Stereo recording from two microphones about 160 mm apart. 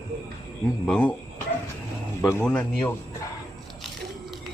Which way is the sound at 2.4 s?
10° left (ahead or behind).